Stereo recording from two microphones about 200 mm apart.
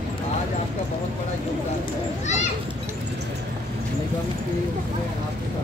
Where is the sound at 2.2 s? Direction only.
35° left (ahead or behind).